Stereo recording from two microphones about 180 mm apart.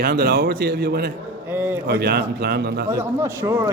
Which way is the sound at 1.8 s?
65° right (ahead or behind).